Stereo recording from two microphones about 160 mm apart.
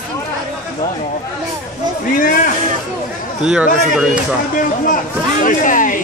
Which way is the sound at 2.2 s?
60° left (ahead or behind).